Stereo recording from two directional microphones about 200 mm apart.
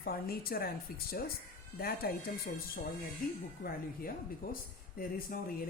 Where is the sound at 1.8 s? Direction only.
50° left (ahead or behind).